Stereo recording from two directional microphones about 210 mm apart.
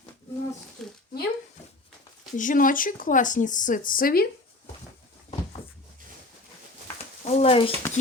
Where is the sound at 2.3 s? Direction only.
40° left (ahead or behind).